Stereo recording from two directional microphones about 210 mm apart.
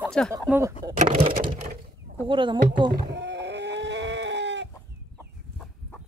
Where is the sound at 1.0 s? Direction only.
25° right (ahead or behind).